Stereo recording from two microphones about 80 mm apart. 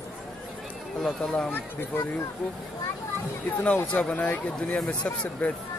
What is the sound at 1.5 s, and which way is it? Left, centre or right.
Speech, left.